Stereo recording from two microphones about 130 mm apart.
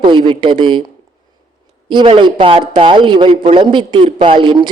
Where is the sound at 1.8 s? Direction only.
40° right (ahead or behind).